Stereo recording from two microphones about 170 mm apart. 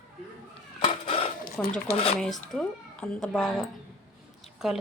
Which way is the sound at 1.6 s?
5° left (ahead or behind).